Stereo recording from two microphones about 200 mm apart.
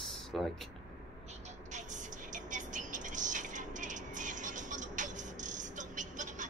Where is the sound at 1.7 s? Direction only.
40° right (ahead or behind).